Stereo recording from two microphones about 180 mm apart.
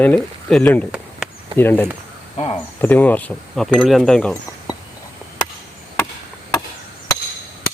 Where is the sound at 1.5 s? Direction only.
10° left (ahead or behind).